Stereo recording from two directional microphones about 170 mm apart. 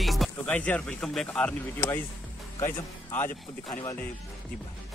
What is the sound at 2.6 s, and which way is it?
A man's voice, 15° left (ahead or behind).